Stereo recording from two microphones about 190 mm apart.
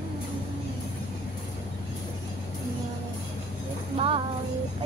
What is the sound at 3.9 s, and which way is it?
Music, 30° right (ahead or behind).